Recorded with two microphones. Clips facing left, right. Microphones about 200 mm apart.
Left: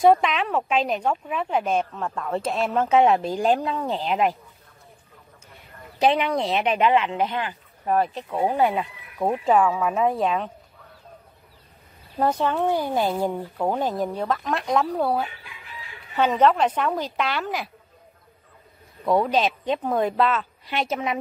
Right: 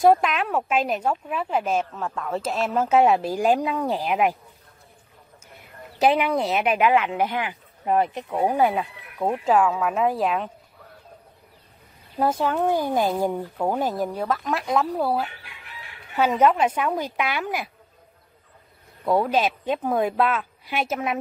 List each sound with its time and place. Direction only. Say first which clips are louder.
0.0 s a woman's voice: even; 5° right (ahead or behind)
5.9 s speech: right 1 dB; 5° right (ahead or behind)
9.2 s a woman's voice: even; centre (ahead or behind)
12.2 s a woman's voice: even; 5° right (ahead or behind)
15.4 s chicken: left 2 dB; 65° right (ahead or behind)
16.2 s speech: even; 10° right (ahead or behind)
19.0 s speech: even; 5° right (ahead or behind)